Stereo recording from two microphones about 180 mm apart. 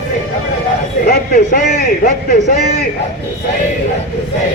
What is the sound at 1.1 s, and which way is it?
A man's voice, 55° left (ahead or behind).